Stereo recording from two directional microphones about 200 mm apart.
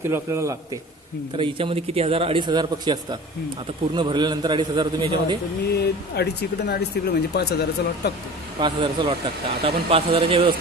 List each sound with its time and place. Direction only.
0.0 s a man's voice: 15° right (ahead or behind)
1.3 s a man's voice: 25° right (ahead or behind)
5.7 s speech: 55° left (ahead or behind)
8.5 s a man's voice: 25° right (ahead or behind)